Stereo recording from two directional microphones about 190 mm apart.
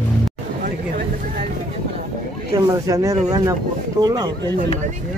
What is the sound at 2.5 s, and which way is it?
Speech, 20° right (ahead or behind).